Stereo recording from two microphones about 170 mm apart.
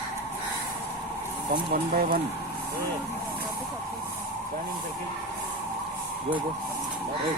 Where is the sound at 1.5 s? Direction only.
60° right (ahead or behind).